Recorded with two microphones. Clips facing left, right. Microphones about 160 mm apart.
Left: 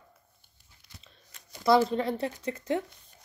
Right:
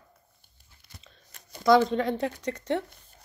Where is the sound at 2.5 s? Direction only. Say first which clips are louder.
Right 1 dB; 70° right (ahead or behind).